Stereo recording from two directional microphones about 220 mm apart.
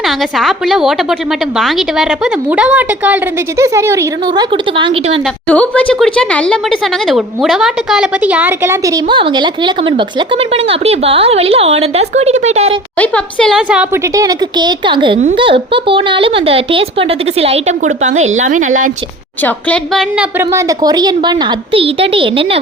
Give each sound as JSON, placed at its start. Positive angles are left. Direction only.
{"t": 0.0, "sound": "a woman's voice", "side_deg": 0}
{"t": 5.5, "sound": "speech", "side_deg": 5}
{"t": 13.0, "sound": "a woman's voice", "side_deg": 5}
{"t": 14.2, "sound": "a woman's voice", "side_deg": -20}
{"t": 19.4, "sound": "a woman's voice", "side_deg": 5}
{"t": 20.4, "sound": "speech", "side_deg": -15}